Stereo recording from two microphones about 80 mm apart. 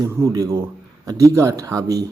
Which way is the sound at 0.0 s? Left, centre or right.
Right.